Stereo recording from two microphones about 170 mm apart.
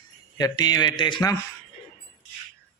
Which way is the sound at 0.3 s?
25° left (ahead or behind).